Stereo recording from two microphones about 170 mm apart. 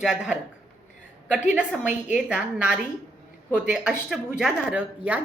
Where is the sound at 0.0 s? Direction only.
5° right (ahead or behind).